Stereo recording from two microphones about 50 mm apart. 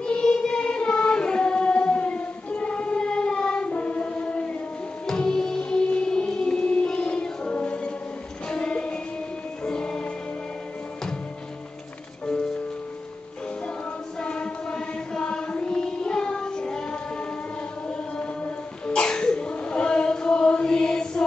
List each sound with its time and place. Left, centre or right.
0.0 s music: centre
5.0 s music: centre
14.2 s choir: centre
17.8 s sneeze: left